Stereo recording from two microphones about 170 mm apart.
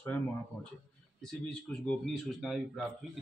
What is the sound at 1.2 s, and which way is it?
Speech, 5° left (ahead or behind).